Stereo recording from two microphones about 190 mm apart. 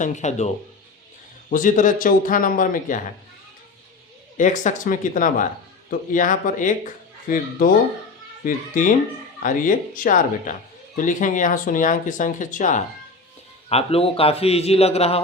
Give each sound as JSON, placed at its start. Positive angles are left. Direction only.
{"t": 0.0, "sound": "a man's voice", "side_deg": 40}
{"t": 4.4, "sound": "a man's voice", "side_deg": 40}